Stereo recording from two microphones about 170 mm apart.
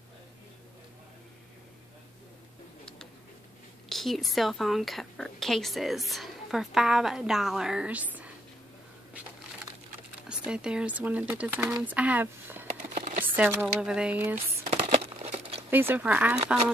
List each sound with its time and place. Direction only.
3.9 s a woman's voice: centre (ahead or behind)
10.2 s speech: 5° right (ahead or behind)
12.6 s a sound: 50° right (ahead or behind)
13.2 s speech: 10° right (ahead or behind)
15.2 s crumpling: 40° right (ahead or behind)
15.7 s speech: 10° right (ahead or behind)